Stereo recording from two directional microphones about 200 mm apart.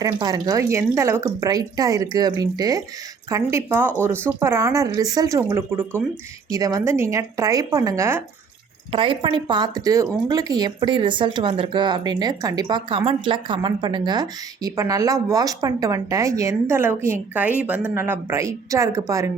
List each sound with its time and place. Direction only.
0.0 s speech: 20° right (ahead or behind)
8.9 s speech: 25° right (ahead or behind)